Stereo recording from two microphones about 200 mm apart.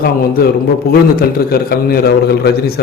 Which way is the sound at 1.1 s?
50° left (ahead or behind).